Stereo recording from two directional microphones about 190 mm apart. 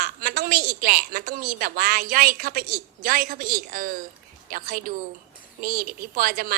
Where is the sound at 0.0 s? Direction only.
50° right (ahead or behind).